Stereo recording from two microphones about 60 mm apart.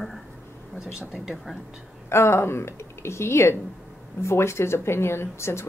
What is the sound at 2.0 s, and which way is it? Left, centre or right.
A woman's voice, left.